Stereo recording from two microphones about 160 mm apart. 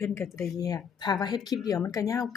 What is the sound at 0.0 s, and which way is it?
A woman's voice, 15° left (ahead or behind).